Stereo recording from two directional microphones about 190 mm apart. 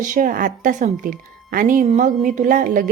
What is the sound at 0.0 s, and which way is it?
A woman's voice, 45° right (ahead or behind).